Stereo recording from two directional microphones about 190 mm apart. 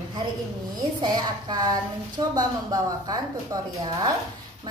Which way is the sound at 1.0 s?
20° right (ahead or behind).